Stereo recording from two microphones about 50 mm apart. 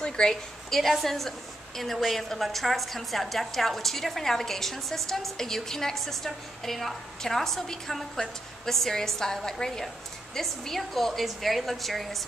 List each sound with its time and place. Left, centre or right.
0.0 s a woman's voice: centre